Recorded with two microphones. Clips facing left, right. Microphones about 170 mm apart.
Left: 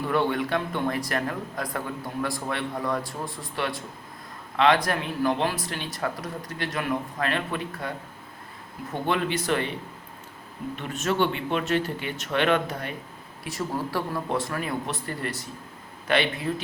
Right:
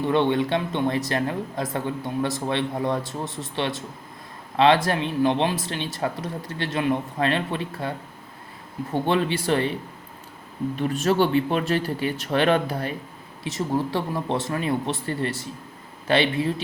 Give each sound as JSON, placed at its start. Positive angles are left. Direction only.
{"t": 0.0, "sound": "a man's voice", "side_deg": -25}
{"t": 10.8, "sound": "a man's voice", "side_deg": -35}